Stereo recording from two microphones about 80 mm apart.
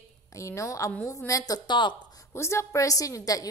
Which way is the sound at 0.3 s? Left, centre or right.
Left.